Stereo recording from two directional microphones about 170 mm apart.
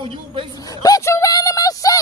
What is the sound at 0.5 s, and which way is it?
Speech, 20° left (ahead or behind).